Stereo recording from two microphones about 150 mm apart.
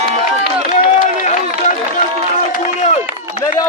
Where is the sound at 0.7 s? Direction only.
55° left (ahead or behind).